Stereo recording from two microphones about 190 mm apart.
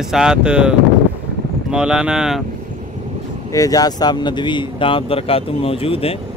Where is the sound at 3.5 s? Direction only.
20° left (ahead or behind).